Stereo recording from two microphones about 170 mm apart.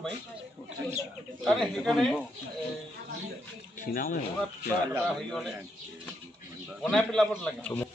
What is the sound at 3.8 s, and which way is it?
Speech, 55° left (ahead or behind).